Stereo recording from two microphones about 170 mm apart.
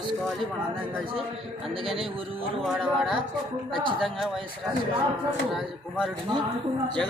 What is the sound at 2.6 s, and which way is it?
Speech, centre (ahead or behind).